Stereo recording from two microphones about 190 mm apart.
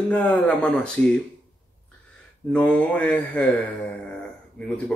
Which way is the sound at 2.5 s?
5° left (ahead or behind).